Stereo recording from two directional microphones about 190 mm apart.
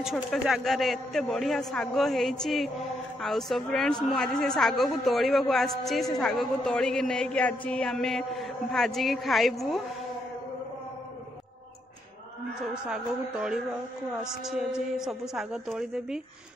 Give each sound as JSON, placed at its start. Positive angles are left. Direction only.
{"t": 0.0, "sound": "a woman's voice", "side_deg": 0}
{"t": 12.8, "sound": "a woman's voice", "side_deg": -5}